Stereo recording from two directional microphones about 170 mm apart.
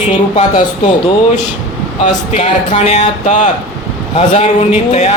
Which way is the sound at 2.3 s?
40° left (ahead or behind).